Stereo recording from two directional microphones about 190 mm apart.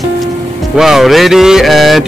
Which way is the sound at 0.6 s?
Centre (ahead or behind).